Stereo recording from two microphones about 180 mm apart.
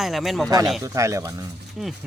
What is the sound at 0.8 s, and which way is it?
Speech, 15° right (ahead or behind).